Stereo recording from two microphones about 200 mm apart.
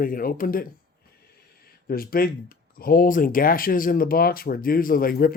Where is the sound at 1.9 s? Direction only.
45° left (ahead or behind).